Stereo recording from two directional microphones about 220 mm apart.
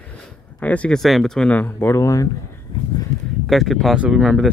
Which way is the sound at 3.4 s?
Centre (ahead or behind).